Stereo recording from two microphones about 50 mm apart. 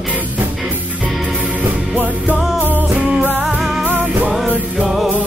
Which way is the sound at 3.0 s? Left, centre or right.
Right.